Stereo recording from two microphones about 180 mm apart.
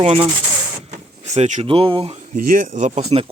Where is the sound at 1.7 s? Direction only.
30° right (ahead or behind).